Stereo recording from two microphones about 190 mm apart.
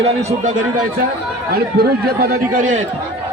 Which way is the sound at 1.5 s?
55° right (ahead or behind).